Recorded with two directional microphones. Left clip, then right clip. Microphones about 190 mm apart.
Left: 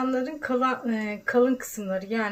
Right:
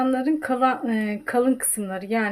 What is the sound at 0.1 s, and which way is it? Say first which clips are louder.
Speech: right 4 dB; 40° right (ahead or behind).